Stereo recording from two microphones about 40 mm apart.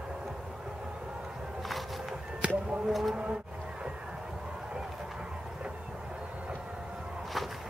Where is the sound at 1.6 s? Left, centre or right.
Centre.